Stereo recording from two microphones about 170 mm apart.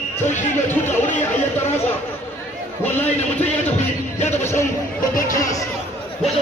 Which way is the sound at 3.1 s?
40° left (ahead or behind).